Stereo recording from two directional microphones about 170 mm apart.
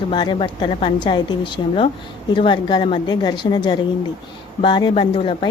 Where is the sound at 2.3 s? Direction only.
25° left (ahead or behind).